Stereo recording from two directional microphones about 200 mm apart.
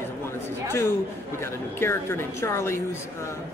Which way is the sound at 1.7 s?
10° left (ahead or behind).